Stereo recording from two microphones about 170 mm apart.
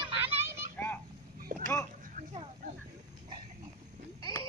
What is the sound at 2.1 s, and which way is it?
Oink, 50° right (ahead or behind).